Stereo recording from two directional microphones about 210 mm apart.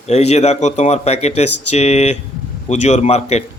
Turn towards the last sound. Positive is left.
turn(degrees=30)  # may be behind; listen again after turning